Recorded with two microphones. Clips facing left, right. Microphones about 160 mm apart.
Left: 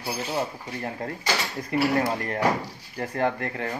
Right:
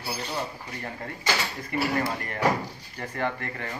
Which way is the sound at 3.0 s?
35° left (ahead or behind).